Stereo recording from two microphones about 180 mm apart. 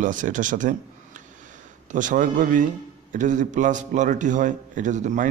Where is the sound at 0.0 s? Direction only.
45° right (ahead or behind).